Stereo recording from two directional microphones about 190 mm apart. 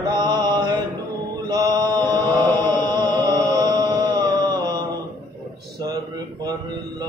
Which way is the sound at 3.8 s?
20° right (ahead or behind).